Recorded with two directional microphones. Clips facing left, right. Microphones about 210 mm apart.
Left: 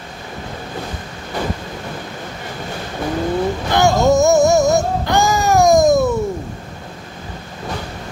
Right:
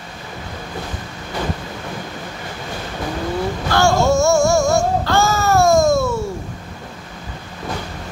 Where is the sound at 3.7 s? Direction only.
20° left (ahead or behind).